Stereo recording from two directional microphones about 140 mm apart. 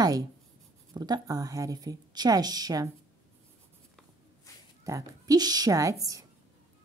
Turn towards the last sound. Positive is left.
turn(degrees=-25)  # may be behind; listen again after turning